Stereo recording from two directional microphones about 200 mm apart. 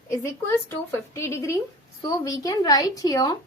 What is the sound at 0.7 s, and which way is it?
A woman's voice, 15° left (ahead or behind).